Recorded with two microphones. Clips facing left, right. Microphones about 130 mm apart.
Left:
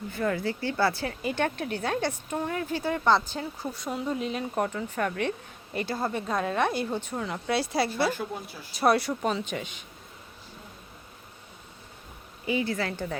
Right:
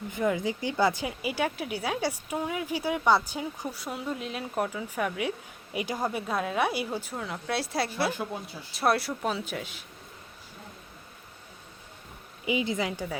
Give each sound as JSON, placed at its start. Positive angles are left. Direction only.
{"t": 0.1, "sound": "speech", "side_deg": -15}
{"t": 12.5, "sound": "speech", "side_deg": -15}